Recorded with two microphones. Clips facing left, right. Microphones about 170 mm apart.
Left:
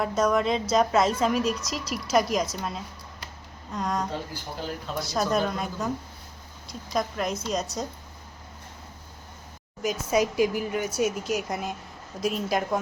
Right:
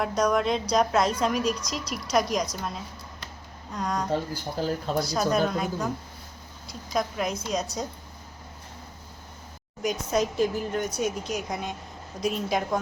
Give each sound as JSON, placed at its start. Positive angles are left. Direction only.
{"t": 0.2, "sound": "a woman's voice", "side_deg": 0}
{"t": 4.6, "sound": "speech", "side_deg": -40}
{"t": 4.9, "sound": "a woman's voice", "side_deg": 0}
{"t": 9.8, "sound": "a woman's voice", "side_deg": 5}